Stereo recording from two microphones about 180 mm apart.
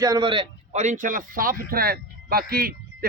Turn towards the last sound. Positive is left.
turn(degrees=-60)  # may be behind; listen again after turning